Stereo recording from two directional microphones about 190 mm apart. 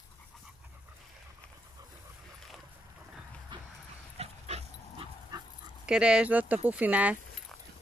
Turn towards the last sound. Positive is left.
turn(degrees=-10)  # may be behind; listen again after turning